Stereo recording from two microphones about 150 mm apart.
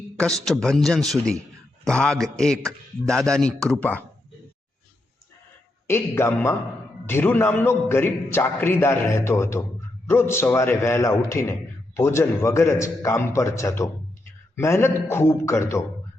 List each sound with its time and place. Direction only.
0.2 s a man's voice: 5° left (ahead or behind)
5.9 s a man's voice: 15° left (ahead or behind)